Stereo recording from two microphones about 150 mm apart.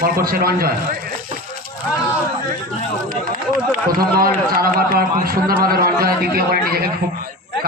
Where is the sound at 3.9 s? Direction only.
80° right.